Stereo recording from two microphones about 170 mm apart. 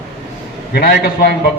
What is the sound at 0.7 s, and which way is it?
Speech, 65° left (ahead or behind).